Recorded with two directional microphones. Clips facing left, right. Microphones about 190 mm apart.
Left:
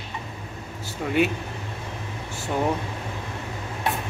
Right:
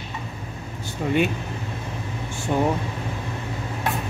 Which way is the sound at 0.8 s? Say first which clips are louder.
Right 1 dB; 5° left (ahead or behind).